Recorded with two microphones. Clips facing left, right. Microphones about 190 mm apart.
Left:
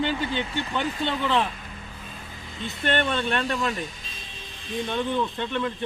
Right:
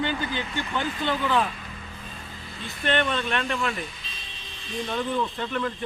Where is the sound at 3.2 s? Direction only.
35° left (ahead or behind).